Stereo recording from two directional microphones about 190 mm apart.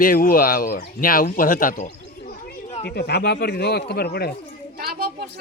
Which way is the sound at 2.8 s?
60° left (ahead or behind).